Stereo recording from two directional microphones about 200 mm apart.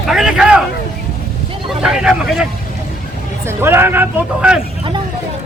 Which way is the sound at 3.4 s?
10° right (ahead or behind).